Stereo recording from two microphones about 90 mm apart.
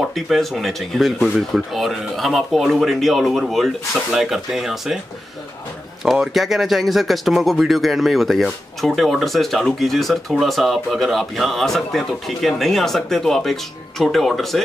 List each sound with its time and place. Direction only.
0.0 s speech: centre (ahead or behind)
6.0 s speech: centre (ahead or behind)